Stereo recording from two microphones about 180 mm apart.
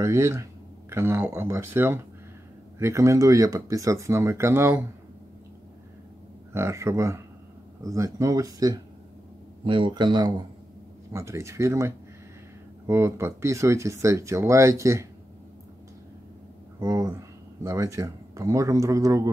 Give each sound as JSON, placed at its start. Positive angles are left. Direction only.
{"t": 0.0, "sound": "speech", "side_deg": -15}
{"t": 6.5, "sound": "speech", "side_deg": -15}
{"t": 16.8, "sound": "speech", "side_deg": -15}